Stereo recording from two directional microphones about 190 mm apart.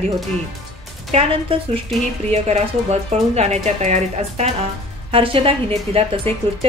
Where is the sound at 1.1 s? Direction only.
35° right (ahead or behind).